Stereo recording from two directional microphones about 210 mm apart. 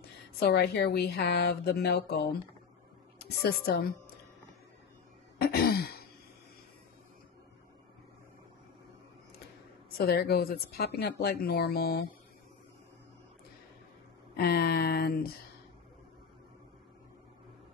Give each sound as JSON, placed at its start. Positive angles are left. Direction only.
{"t": 0.4, "sound": "a woman's voice", "side_deg": 50}
{"t": 5.4, "sound": "throat clearing", "side_deg": 45}
{"t": 9.8, "sound": "a woman's voice", "side_deg": 50}
{"t": 14.3, "sound": "a sound", "side_deg": 45}